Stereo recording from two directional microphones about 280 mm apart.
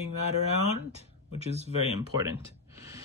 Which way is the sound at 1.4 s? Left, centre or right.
Right.